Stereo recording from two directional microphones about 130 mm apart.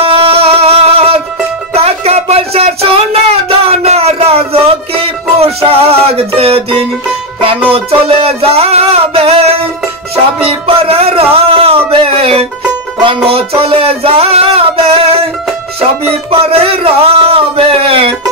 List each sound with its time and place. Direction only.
0.0 s music: 45° right (ahead or behind)
16.0 s music: 45° right (ahead or behind)